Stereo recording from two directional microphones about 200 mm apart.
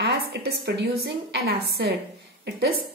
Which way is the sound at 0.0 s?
50° right (ahead or behind).